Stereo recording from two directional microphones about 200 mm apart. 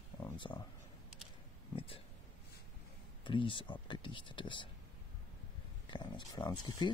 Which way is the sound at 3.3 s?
25° left (ahead or behind).